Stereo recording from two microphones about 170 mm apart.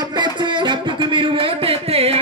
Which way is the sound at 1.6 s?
35° right (ahead or behind).